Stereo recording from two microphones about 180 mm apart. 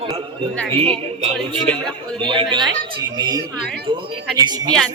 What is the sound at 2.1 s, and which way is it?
A woman's voice, 25° right (ahead or behind).